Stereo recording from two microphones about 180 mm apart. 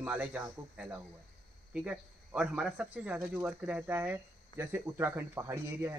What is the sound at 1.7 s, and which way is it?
Speech, 5° right (ahead or behind).